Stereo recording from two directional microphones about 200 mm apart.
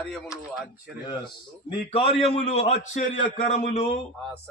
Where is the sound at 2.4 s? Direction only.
30° left (ahead or behind).